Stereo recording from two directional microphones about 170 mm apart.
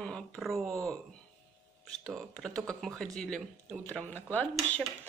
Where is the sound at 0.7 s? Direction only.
20° right (ahead or behind).